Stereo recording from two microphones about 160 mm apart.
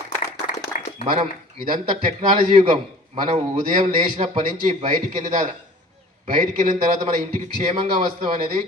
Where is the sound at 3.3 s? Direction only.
45° right (ahead or behind).